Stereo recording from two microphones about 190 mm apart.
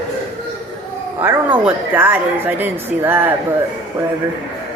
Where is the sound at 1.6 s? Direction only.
10° right (ahead or behind).